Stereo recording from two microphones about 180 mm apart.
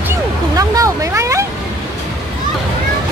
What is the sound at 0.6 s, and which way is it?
Speech, 20° right (ahead or behind).